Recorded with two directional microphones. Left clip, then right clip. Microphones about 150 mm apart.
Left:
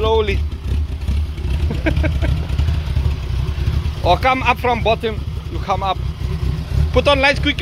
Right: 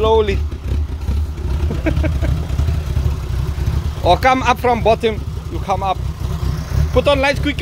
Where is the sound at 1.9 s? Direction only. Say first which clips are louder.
Left 1 dB; 5° left (ahead or behind).